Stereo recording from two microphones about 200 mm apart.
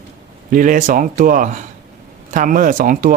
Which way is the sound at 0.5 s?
40° right (ahead or behind).